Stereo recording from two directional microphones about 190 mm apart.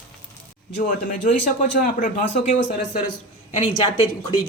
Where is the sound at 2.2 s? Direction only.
70° left (ahead or behind).